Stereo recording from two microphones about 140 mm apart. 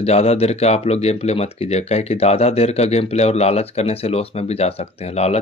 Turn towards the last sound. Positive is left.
turn(degrees=50)  # may be behind; listen again after turning